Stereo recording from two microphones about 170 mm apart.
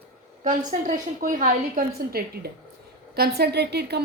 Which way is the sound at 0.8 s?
50° right (ahead or behind).